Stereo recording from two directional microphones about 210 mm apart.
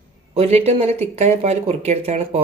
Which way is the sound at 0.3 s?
30° right (ahead or behind).